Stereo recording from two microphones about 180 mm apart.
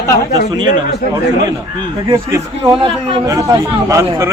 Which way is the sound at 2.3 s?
25° right (ahead or behind).